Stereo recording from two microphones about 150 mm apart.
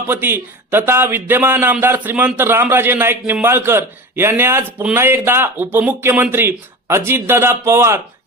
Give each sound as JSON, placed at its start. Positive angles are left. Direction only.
{"t": 0.1, "sound": "a man's voice", "side_deg": -15}